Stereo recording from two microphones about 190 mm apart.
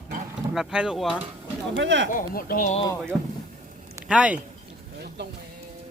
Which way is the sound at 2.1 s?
50° left (ahead or behind).